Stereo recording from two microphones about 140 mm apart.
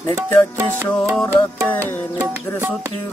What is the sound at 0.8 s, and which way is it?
Music, 5° left (ahead or behind).